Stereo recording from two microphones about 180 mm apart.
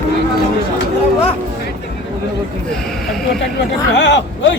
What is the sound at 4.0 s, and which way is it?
Speech, 80° left.